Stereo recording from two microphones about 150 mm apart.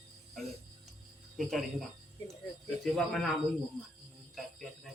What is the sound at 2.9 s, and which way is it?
A man's voice, centre (ahead or behind).